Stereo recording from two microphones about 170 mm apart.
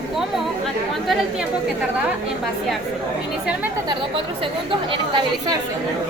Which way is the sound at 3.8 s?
30° right (ahead or behind).